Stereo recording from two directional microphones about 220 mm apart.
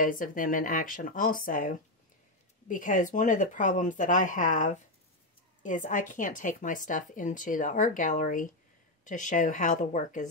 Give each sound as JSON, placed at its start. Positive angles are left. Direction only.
{"t": 0.0, "sound": "speech", "side_deg": 40}